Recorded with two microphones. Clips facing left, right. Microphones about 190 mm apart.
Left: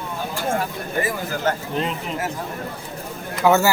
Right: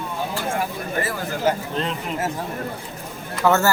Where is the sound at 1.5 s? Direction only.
10° right (ahead or behind).